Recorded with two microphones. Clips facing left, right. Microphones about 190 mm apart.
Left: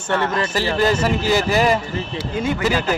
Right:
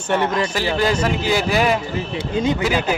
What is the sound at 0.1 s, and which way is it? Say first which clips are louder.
Speech: right 1 dB; 15° right (ahead or behind).